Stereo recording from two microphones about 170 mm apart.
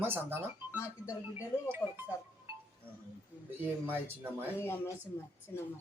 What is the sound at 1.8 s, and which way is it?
Speech, 20° left (ahead or behind).